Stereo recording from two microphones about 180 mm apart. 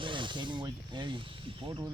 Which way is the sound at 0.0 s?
25° right (ahead or behind).